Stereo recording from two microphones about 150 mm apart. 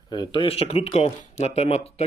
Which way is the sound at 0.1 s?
30° left (ahead or behind).